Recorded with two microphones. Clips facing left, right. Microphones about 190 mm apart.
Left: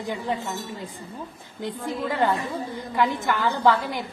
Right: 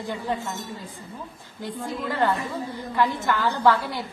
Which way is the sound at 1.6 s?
20° left (ahead or behind).